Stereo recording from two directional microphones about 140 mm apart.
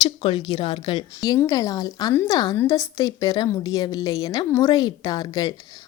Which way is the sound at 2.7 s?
25° left (ahead or behind).